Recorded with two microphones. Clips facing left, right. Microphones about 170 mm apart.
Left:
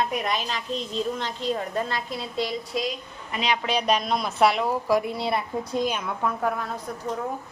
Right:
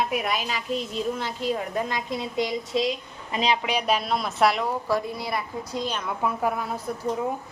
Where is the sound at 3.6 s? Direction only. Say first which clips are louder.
Left 1 dB; 10° right (ahead or behind).